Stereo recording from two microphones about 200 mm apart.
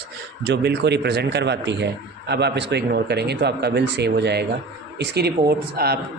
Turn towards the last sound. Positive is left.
turn(degrees=-50)  # may be behind; listen again after turning